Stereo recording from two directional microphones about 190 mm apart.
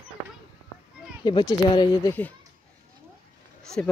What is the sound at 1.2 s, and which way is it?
Speech, 25° left (ahead or behind).